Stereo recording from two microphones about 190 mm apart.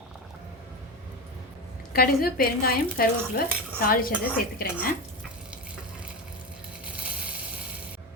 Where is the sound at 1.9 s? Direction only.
50° left (ahead or behind).